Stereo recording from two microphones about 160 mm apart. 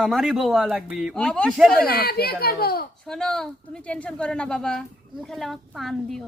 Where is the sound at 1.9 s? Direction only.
70° left (ahead or behind).